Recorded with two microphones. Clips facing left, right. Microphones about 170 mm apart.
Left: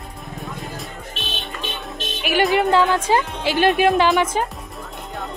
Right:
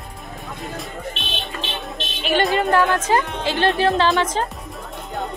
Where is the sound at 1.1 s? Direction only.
45° left (ahead or behind).